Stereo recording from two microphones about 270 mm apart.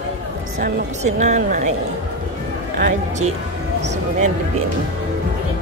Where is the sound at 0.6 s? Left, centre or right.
Right.